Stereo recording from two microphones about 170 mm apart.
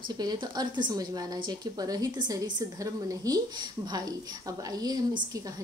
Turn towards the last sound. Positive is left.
turn(degrees=-20)  # may be behind; listen again after turning